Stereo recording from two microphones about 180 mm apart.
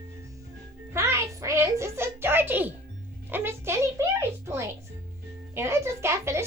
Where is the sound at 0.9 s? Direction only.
15° right (ahead or behind).